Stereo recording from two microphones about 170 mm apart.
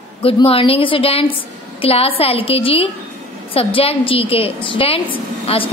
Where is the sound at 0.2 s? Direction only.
35° left (ahead or behind).